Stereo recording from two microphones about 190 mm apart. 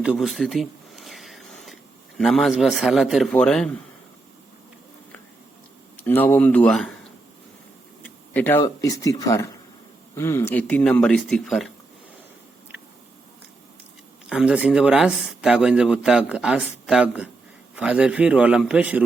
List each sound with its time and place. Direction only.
0.0 s speech: centre (ahead or behind)
6.1 s speech: 10° left (ahead or behind)
8.0 s speech: 10° left (ahead or behind)
14.3 s speech: 5° right (ahead or behind)